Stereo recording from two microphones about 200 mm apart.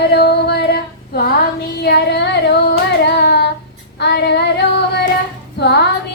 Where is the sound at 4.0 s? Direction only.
55° left (ahead or behind).